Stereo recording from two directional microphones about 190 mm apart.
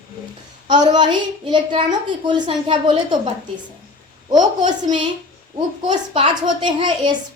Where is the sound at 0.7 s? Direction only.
25° right (ahead or behind).